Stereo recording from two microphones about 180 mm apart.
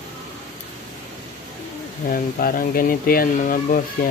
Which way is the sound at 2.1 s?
50° left (ahead or behind).